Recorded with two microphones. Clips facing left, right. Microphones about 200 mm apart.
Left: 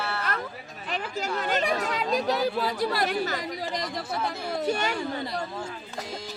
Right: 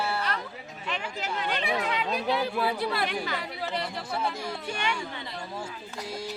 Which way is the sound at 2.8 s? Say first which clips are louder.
Left 3 dB; 40° left (ahead or behind).